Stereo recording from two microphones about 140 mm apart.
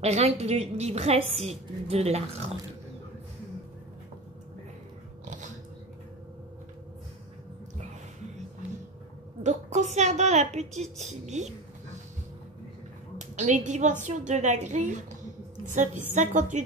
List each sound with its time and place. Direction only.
0.0 s a woman's voice: 50° right (ahead or behind)
9.4 s a woman's voice: 55° right (ahead or behind)
13.2 s a woman's voice: 60° right (ahead or behind)